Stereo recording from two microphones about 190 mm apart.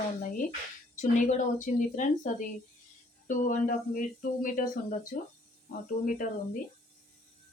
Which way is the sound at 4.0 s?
45° left (ahead or behind).